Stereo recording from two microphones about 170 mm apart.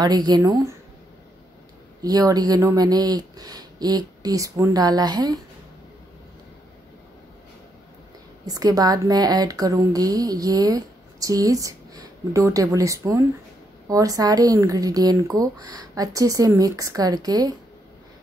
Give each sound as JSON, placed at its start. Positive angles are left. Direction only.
{"t": 0.0, "sound": "a woman's voice", "side_deg": -25}
{"t": 2.0, "sound": "a woman's voice", "side_deg": -20}
{"t": 8.5, "sound": "a woman's voice", "side_deg": -20}